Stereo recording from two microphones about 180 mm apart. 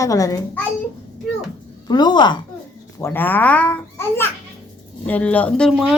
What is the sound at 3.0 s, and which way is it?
A child's voice, 15° left (ahead or behind).